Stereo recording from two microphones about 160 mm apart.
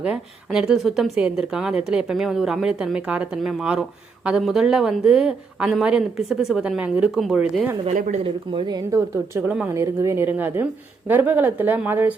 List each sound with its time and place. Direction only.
0.0 s speech: 5° right (ahead or behind)
7.9 s speech: 50° right (ahead or behind)
8.2 s a woman's voice: 30° right (ahead or behind); by 12.1 s 10° right (ahead or behind)